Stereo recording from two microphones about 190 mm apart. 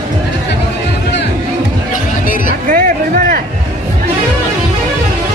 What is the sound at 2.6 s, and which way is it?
Music, 45° right (ahead or behind).